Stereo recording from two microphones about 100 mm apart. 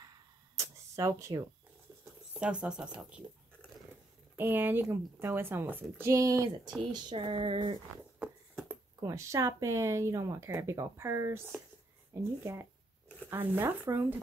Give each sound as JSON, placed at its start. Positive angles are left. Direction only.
{"t": 0.6, "sound": "a sound", "side_deg": -30}
{"t": 2.3, "sound": "speech", "side_deg": -10}
{"t": 4.4, "sound": "speech", "side_deg": -20}
{"t": 6.8, "sound": "speech", "side_deg": -50}
{"t": 8.2, "sound": "a sound", "side_deg": -10}
{"t": 9.0, "sound": "speech", "side_deg": -30}